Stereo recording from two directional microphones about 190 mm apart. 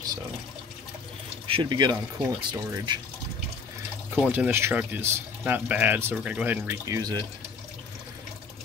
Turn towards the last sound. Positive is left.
turn(degrees=-20)  # may be behind; listen again after turning